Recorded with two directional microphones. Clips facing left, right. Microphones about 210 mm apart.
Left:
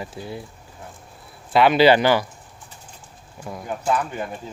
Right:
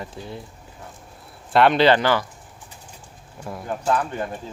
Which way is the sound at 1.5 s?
Centre (ahead or behind).